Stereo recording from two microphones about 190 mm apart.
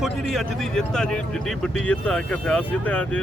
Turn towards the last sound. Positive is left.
turn(degrees=5)  # may be behind; listen again after turning